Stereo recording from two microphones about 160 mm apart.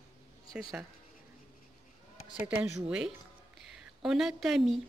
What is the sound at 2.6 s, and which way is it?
Speech, 5° right (ahead or behind).